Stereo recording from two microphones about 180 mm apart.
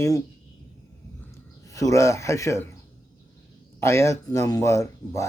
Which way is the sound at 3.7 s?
15° left (ahead or behind).